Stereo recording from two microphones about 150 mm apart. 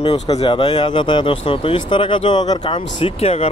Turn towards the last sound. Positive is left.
turn(degrees=45)  # may be behind; listen again after turning